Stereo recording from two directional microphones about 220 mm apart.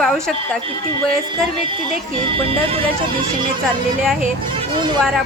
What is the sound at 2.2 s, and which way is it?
Music, 25° right (ahead or behind).